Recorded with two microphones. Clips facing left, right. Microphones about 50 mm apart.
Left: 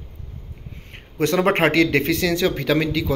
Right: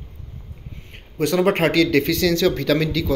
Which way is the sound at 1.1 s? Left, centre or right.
Left.